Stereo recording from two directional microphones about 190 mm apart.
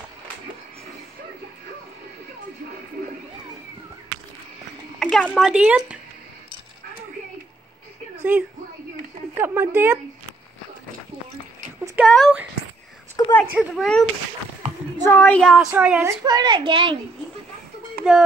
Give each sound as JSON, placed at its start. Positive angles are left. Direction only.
{"t": 4.9, "sound": "speech", "side_deg": 0}
{"t": 8.2, "sound": "a woman's voice", "side_deg": -10}
{"t": 11.8, "sound": "a sound", "side_deg": -10}
{"t": 13.1, "sound": "a sound", "side_deg": 15}
{"t": 13.5, "sound": "a child's voice", "side_deg": 0}
{"t": 15.0, "sound": "speech", "side_deg": 10}
{"t": 15.5, "sound": "a woman's voice", "side_deg": -5}
{"t": 18.1, "sound": "a child's voice", "side_deg": 0}